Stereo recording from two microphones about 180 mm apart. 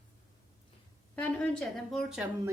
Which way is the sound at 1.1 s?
10° left (ahead or behind).